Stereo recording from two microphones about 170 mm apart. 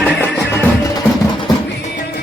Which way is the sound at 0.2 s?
10° left (ahead or behind).